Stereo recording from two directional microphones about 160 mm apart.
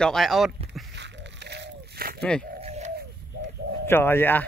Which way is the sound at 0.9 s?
90° right.